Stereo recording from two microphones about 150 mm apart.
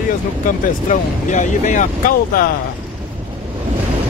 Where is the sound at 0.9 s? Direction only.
55° left (ahead or behind).